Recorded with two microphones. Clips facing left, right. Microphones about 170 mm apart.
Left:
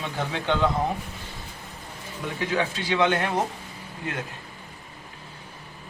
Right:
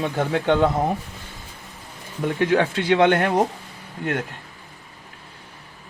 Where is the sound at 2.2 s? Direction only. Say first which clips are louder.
Right 7 dB; 55° right (ahead or behind).